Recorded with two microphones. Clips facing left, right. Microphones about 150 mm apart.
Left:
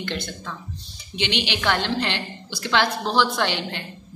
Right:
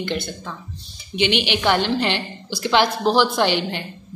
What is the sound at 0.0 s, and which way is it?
Speech, 10° right (ahead or behind).